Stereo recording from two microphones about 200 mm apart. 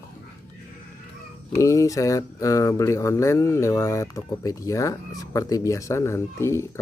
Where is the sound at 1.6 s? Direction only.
15° left (ahead or behind).